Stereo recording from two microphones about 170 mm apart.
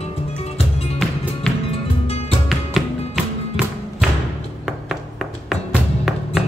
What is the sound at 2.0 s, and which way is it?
Music, 35° left (ahead or behind).